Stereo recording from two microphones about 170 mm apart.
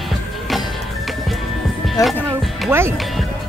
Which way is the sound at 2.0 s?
20° left (ahead or behind).